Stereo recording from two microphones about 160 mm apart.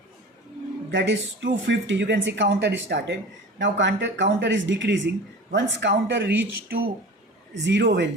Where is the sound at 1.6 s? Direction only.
90° right.